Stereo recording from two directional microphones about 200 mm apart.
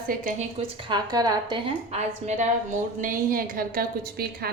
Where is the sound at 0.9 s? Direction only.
20° right (ahead or behind).